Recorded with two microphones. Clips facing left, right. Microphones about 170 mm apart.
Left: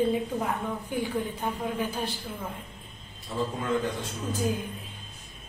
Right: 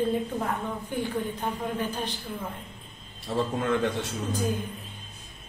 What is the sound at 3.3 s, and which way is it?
Speech, 65° right (ahead or behind).